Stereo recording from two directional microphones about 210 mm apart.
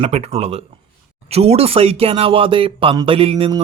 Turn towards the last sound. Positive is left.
turn(degrees=-25)  # may be behind; listen again after turning